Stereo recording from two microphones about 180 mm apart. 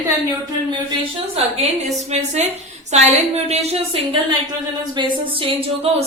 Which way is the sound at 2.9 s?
35° right (ahead or behind).